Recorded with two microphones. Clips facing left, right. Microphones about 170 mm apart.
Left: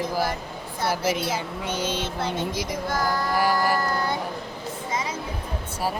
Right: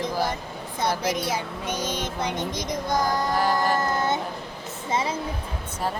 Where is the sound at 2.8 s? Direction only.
20° right (ahead or behind).